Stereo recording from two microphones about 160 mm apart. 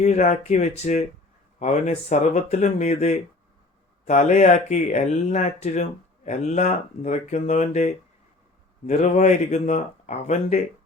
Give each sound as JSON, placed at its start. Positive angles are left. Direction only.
{"t": 0.0, "sound": "speech", "side_deg": 45}
{"t": 8.9, "sound": "speech", "side_deg": 50}